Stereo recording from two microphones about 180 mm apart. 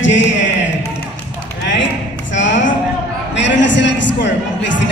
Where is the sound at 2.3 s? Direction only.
90° left.